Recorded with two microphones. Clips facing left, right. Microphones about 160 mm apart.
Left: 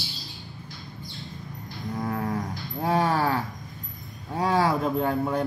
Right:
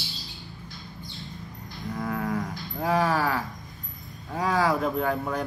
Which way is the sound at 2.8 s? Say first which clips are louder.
Left 1 dB; 30° left (ahead or behind).